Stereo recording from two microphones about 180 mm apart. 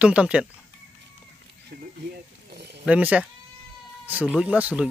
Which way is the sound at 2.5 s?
70° right (ahead or behind).